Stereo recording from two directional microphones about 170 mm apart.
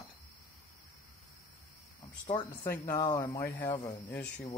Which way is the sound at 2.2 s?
25° left (ahead or behind).